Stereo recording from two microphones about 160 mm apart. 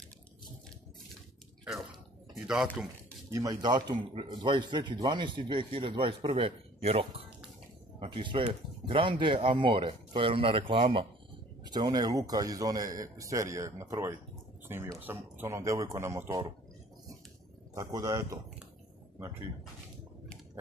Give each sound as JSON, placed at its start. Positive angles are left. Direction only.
{"t": 2.4, "sound": "a man's voice", "side_deg": -5}
{"t": 3.3, "sound": "speech", "side_deg": -20}
{"t": 17.7, "sound": "speech", "side_deg": -20}